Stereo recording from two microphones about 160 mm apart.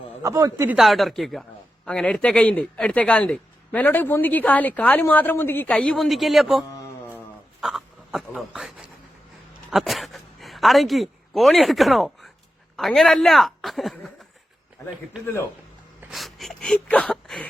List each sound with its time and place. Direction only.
0.2 s speech: 20° right (ahead or behind)
0.8 s a man's voice: centre (ahead or behind)
14.8 s speech: 20° left (ahead or behind)
16.0 s a sound: centre (ahead or behind)